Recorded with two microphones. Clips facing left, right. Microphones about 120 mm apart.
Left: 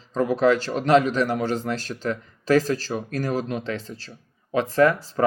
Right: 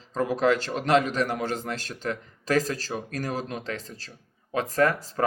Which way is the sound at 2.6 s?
40° right (ahead or behind).